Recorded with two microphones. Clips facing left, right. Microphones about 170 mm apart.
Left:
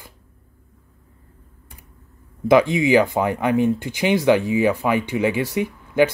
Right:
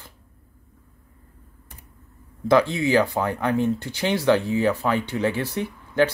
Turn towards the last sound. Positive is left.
turn(degrees=10)  # may be behind; listen again after turning